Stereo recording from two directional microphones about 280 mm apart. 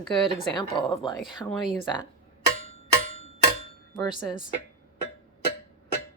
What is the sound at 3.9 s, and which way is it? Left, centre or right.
Speech, centre.